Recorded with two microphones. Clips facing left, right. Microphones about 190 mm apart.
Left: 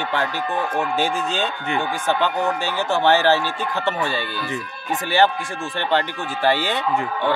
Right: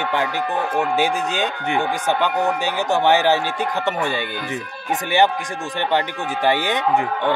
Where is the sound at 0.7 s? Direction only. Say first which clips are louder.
Right 4 dB; 15° right (ahead or behind).